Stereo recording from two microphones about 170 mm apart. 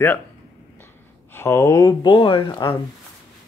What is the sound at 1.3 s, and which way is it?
Speech, 15° left (ahead or behind).